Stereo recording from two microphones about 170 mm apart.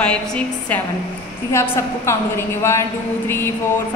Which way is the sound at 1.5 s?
15° left (ahead or behind).